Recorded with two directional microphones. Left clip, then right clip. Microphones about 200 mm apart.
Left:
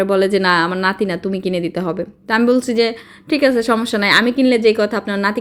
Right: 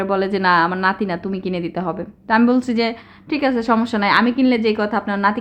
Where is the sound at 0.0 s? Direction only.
10° left (ahead or behind).